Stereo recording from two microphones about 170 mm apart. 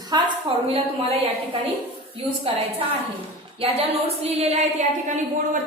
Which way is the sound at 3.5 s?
35° right (ahead or behind).